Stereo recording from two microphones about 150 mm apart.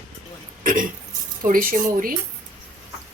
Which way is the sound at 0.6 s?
65° right (ahead or behind).